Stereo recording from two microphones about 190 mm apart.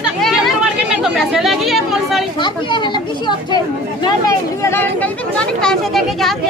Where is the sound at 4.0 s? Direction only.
15° left (ahead or behind).